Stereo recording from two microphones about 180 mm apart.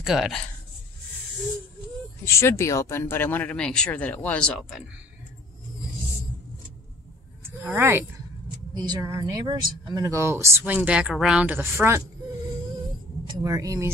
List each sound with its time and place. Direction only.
0.0 s speech: centre (ahead or behind)
2.2 s speech: 15° left (ahead or behind); by 4.8 s centre (ahead or behind)
7.6 s speech: 10° right (ahead or behind)
8.7 s speech: 25° right (ahead or behind)
13.4 s speech: 20° right (ahead or behind)